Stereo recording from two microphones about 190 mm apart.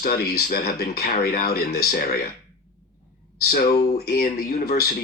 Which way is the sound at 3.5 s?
50° left (ahead or behind).